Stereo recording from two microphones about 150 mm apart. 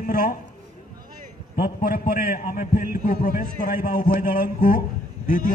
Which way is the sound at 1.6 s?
70° left (ahead or behind).